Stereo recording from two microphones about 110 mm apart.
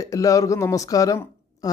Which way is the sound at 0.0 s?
30° left (ahead or behind).